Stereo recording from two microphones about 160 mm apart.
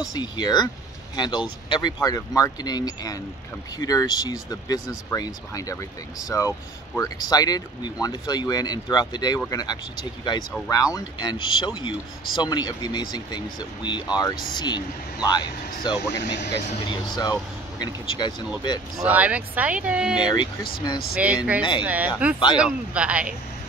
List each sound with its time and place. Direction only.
0.1 s speech: 25° left (ahead or behind)
16.2 s speech: 90° left
17.2 s speech: 25° left (ahead or behind)
19.0 s speech: 10° right (ahead or behind)
20.2 s speech: 25° left (ahead or behind)
21.1 s speech: 10° right (ahead or behind)